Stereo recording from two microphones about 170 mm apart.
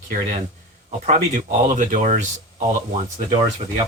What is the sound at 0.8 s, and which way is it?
Speech, 45° right (ahead or behind).